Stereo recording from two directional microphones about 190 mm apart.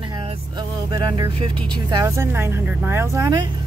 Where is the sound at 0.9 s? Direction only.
20° right (ahead or behind).